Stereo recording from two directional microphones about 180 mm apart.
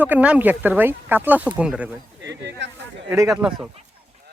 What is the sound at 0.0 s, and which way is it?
Speech, 10° right (ahead or behind).